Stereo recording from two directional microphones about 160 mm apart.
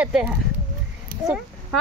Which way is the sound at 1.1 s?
65° right (ahead or behind).